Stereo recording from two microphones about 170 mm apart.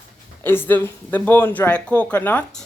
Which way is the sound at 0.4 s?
10° left (ahead or behind).